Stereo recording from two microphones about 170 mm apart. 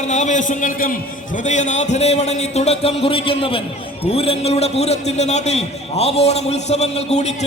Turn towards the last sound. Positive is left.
turn(degrees=40)  # may be behind; listen again after turning